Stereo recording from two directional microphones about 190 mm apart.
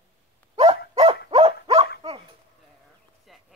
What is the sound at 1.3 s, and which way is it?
Dog, 30° right (ahead or behind).